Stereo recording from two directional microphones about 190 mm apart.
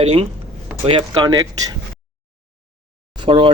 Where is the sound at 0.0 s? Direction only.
30° right (ahead or behind).